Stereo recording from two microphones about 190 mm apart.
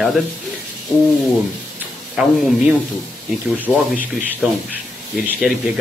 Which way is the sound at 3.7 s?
15° right (ahead or behind).